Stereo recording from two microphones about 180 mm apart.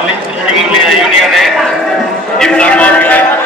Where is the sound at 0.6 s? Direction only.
Centre (ahead or behind).